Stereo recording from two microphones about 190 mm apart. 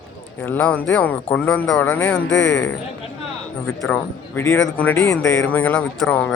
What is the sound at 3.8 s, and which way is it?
Speech, 10° left (ahead or behind).